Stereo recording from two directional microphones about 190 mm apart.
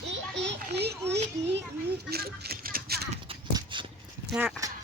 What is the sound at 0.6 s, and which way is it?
Children playing, 60° right (ahead or behind).